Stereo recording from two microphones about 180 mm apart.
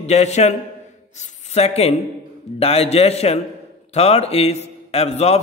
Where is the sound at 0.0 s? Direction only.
40° left (ahead or behind).